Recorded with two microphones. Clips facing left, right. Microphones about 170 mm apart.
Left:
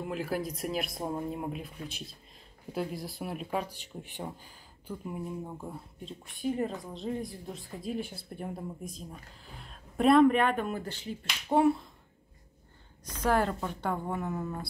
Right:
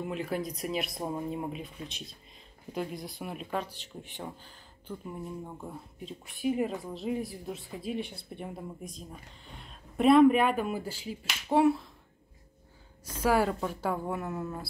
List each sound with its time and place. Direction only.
0.0 s speech: centre (ahead or behind)
13.2 s speech: 5° right (ahead or behind)